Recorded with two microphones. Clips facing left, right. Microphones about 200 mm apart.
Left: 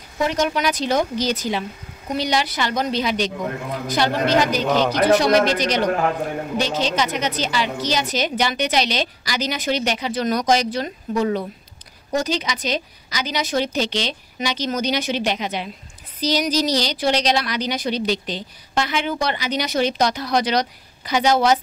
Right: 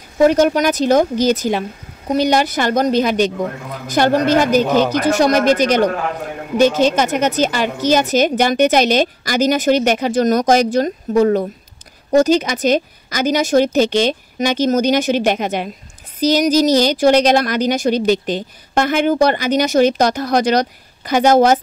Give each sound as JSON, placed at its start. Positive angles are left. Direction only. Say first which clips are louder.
{"t": 0.2, "sound": "a woman's voice", "louder": "right 9 dB", "side_deg": -45}
{"t": 4.6, "sound": "speech", "louder": "right 4 dB", "side_deg": -5}
{"t": 4.9, "sound": "a woman's voice", "louder": "right 1 dB", "side_deg": -45}